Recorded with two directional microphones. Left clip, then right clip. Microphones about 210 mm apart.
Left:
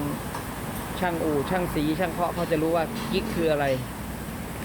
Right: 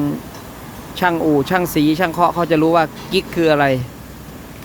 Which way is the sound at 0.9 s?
40° right (ahead or behind).